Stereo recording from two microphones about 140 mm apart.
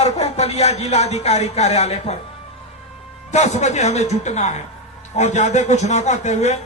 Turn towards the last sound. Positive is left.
turn(degrees=55)  # may be behind; listen again after turning